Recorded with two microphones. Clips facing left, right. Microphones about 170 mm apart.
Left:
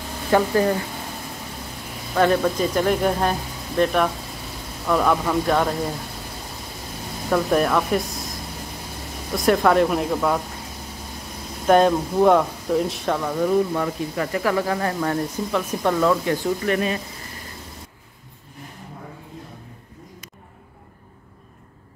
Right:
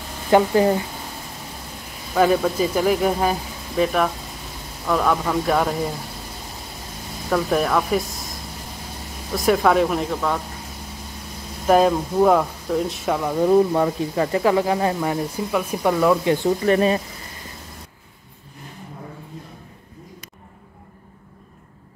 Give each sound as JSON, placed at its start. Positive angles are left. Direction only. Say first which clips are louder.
{"t": 0.3, "sound": "speech", "louder": "right 3 dB", "side_deg": -20}
{"t": 2.1, "sound": "speech", "louder": "right 1 dB", "side_deg": -5}
{"t": 7.2, "sound": "speech", "louder": "left 1 dB", "side_deg": 0}
{"t": 11.6, "sound": "speech", "louder": "even", "side_deg": 0}
{"t": 13.4, "sound": "speech", "louder": "right 6 dB", "side_deg": -30}
{"t": 16.6, "sound": "speech", "louder": "right 7 dB", "side_deg": -35}